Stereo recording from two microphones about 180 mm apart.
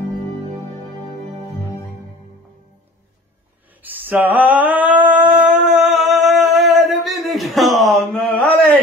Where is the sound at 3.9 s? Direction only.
10° right (ahead or behind).